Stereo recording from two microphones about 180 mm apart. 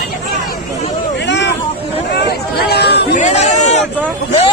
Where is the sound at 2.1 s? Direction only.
65° left (ahead or behind).